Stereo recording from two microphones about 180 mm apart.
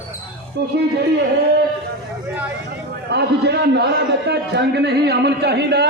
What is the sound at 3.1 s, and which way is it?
A man's voice, 65° right (ahead or behind).